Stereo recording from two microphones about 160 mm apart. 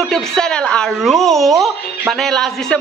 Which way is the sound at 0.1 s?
5° left (ahead or behind).